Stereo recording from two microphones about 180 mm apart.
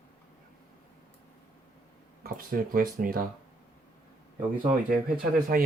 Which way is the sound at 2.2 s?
55° right (ahead or behind).